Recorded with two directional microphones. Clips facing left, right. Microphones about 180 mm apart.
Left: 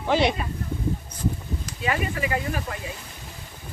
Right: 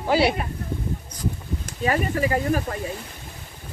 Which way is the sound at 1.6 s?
40° right (ahead or behind).